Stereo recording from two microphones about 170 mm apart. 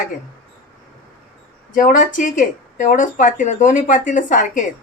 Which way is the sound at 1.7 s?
50° left (ahead or behind).